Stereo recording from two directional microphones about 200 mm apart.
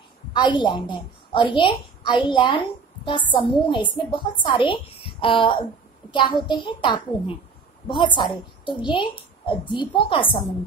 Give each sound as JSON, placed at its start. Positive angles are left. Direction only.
{"t": 0.3, "sound": "a woman's voice", "side_deg": 25}